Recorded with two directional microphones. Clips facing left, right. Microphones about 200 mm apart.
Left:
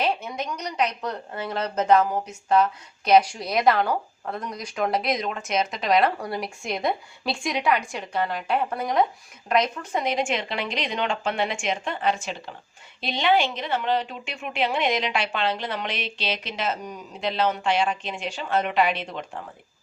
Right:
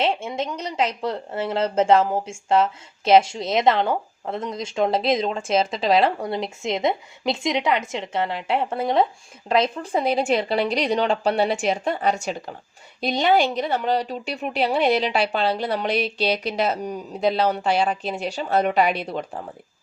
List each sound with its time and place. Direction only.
0.0 s a woman's voice: 25° right (ahead or behind)